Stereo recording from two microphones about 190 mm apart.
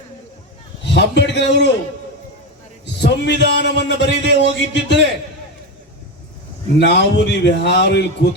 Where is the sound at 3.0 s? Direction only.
65° left (ahead or behind).